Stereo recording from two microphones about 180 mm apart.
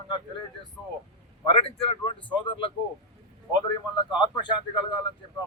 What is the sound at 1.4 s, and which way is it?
Speech, 30° left (ahead or behind).